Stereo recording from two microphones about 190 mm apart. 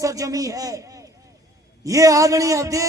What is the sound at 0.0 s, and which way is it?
Speech, 15° right (ahead or behind).